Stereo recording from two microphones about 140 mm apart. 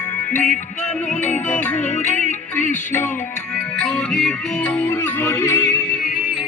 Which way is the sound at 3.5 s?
5° left (ahead or behind).